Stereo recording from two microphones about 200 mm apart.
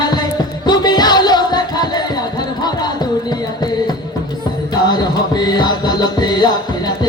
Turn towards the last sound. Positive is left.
turn(degrees=20)  # may be behind; listen again after turning